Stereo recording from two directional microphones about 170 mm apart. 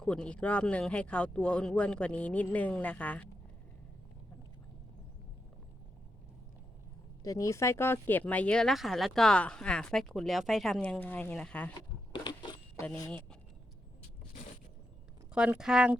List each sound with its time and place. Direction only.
0.0 s speech: 5° left (ahead or behind)
7.3 s speech: 20° left (ahead or behind)
11.7 s a sound: 25° left (ahead or behind)
15.4 s speech: 5° right (ahead or behind)